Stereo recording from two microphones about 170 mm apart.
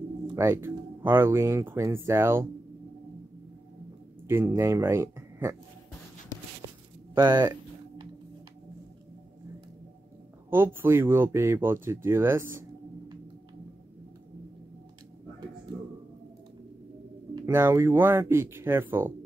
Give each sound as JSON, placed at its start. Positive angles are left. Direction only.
{"t": 0.4, "sound": "speech", "side_deg": -15}
{"t": 4.3, "sound": "speech", "side_deg": -15}
{"t": 7.2, "sound": "speech", "side_deg": -25}
{"t": 10.5, "sound": "speech", "side_deg": -15}
{"t": 17.5, "sound": "speech", "side_deg": -15}